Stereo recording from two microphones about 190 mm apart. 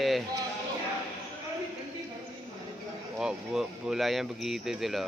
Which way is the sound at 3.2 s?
5° right (ahead or behind).